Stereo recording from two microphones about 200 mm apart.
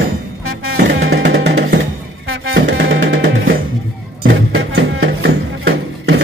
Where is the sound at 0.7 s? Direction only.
55° right (ahead or behind).